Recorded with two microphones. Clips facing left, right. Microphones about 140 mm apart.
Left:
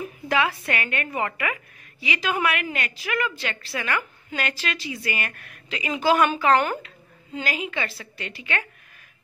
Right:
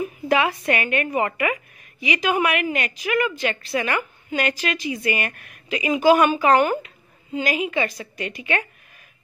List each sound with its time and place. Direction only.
0.0 s a woman's voice: 20° right (ahead or behind)